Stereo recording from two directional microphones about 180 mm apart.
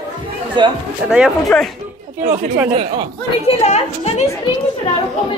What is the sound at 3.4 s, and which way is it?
Speech, 35° left (ahead or behind).